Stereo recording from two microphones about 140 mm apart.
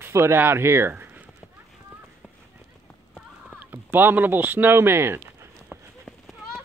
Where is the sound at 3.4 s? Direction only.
15° right (ahead or behind).